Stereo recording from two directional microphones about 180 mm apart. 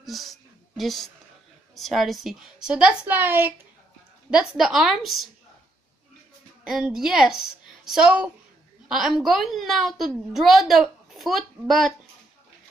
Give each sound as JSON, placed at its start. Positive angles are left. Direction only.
{"t": 0.0, "sound": "a sound", "side_deg": 0}
{"t": 1.8, "sound": "a woman's voice", "side_deg": 0}
{"t": 6.6, "sound": "a woman's voice", "side_deg": -5}